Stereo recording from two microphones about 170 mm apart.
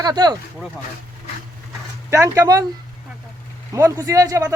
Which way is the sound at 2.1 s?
20° right (ahead or behind).